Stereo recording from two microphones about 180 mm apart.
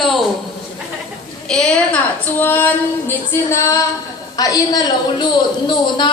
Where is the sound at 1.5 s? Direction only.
5° left (ahead or behind).